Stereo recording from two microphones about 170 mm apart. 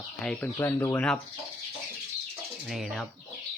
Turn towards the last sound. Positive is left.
turn(degrees=0)  # may be behind; listen again after turning